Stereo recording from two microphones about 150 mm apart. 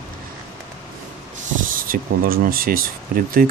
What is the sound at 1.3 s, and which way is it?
Speech, 70° right (ahead or behind).